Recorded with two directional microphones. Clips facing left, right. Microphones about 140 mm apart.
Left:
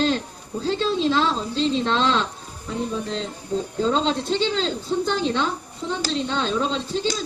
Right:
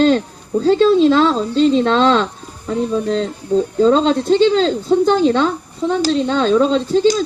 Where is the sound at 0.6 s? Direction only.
50° right (ahead or behind).